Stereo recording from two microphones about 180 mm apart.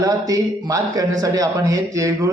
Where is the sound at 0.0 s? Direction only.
20° right (ahead or behind).